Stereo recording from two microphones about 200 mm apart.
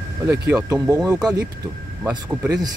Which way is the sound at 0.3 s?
15° right (ahead or behind).